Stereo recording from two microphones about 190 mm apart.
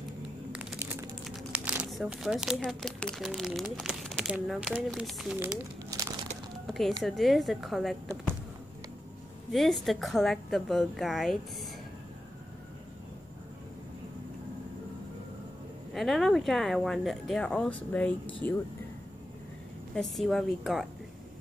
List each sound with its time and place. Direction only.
0.5 s a sound: 5° right (ahead or behind)
1.2 s speech: 5° right (ahead or behind)
5.9 s a sound: 15° right (ahead or behind)
6.7 s speech: centre (ahead or behind)
9.5 s speech: centre (ahead or behind)
15.9 s speech: centre (ahead or behind)
19.9 s speech: centre (ahead or behind)